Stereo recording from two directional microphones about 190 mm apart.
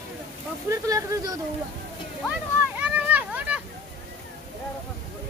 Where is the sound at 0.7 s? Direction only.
20° right (ahead or behind).